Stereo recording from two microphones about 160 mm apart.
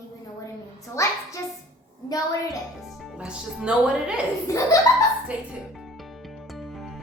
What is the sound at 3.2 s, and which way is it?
A woman's voice, 5° right (ahead or behind).